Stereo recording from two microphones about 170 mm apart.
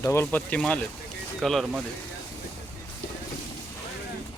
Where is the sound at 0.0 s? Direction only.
15° left (ahead or behind); by 1.8 s centre (ahead or behind).